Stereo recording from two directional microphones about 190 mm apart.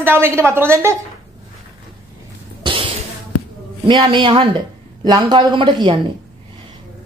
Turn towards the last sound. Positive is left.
turn(degrees=-25)  # may be behind; listen again after turning